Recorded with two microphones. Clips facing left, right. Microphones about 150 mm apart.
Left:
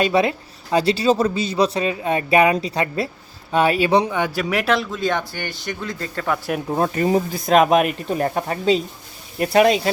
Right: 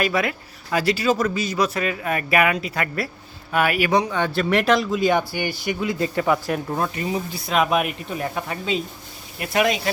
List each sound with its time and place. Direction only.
0.0 s a man's voice: 30° left (ahead or behind)
4.4 s speech: 5° left (ahead or behind)
6.7 s speech: 40° left (ahead or behind)